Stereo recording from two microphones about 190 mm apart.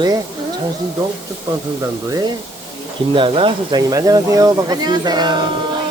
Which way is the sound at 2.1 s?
20° right (ahead or behind).